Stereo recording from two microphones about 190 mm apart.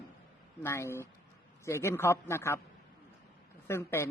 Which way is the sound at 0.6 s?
15° left (ahead or behind).